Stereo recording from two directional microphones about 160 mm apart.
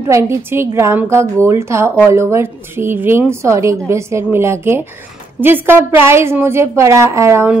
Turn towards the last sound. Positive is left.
turn(degrees=-15)  # may be behind; listen again after turning